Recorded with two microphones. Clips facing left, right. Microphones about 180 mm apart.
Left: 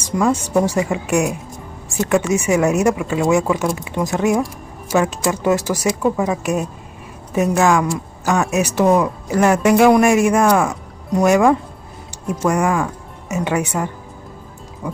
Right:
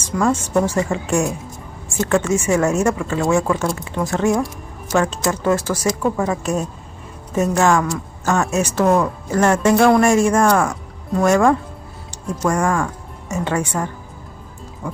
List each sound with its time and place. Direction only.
0.1 s speech: 15° left (ahead or behind)